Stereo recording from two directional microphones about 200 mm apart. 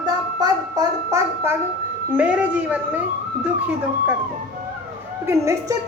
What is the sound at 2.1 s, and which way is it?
Speech, 5° right (ahead or behind).